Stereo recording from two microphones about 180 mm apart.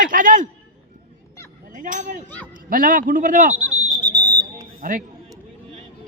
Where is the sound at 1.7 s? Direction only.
45° right (ahead or behind).